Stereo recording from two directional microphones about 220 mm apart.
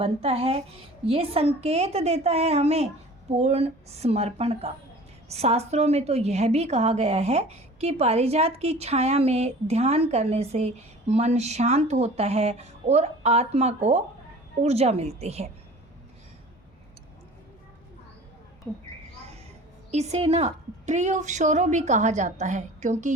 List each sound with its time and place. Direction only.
0.0 s a woman's voice: 25° right (ahead or behind)
19.9 s a woman's voice: 30° right (ahead or behind)